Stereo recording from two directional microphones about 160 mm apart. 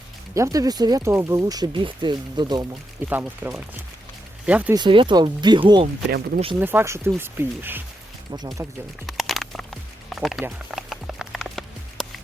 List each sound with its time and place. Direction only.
0.3 s speech: 20° right (ahead or behind)
3.1 s speech: 10° right (ahead or behind)
4.7 s speech: 30° right (ahead or behind)
6.1 s speech: 75° right (ahead or behind)
6.6 s speech: 15° right (ahead or behind)
8.3 s speech: 25° right (ahead or behind)
9.0 s a sound: centre (ahead or behind)